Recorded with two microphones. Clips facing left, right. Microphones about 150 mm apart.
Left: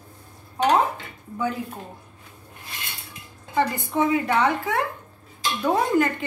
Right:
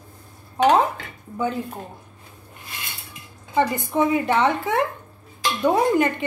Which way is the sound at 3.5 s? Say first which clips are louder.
Right 2 dB; 20° right (ahead or behind).